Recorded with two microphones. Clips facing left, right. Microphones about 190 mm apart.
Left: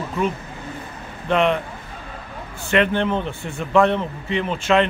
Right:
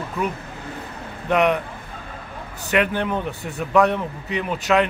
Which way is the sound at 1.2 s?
10° right (ahead or behind).